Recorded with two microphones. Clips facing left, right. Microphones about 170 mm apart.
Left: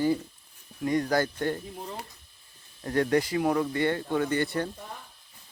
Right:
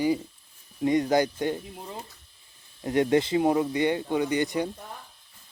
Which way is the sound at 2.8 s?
20° right (ahead or behind).